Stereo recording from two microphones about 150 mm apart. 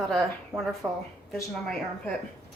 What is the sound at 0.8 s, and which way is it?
Speech, 20° right (ahead or behind).